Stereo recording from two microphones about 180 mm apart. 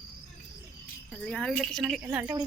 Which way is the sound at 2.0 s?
15° right (ahead or behind).